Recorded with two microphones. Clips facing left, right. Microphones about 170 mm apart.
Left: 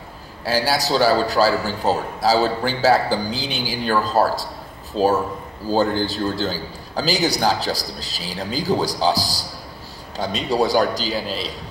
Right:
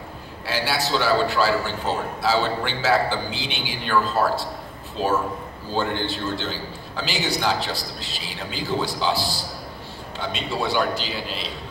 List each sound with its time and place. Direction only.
0.5 s a man's voice: 40° left (ahead or behind)